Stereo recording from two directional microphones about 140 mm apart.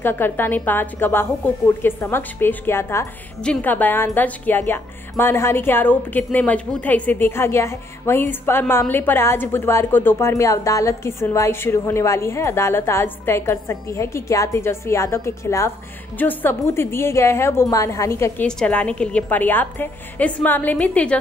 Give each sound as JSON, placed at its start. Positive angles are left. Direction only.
{"t": 0.0, "sound": "a woman's voice", "side_deg": 15}
{"t": 18.6, "sound": "speech", "side_deg": 10}